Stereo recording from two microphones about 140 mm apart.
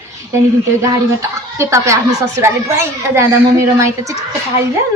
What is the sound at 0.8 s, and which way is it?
Speech, 20° right (ahead or behind).